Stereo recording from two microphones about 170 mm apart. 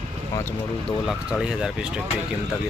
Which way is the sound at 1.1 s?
5° right (ahead or behind).